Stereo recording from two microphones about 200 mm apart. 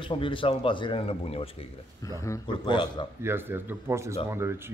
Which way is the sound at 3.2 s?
10° right (ahead or behind).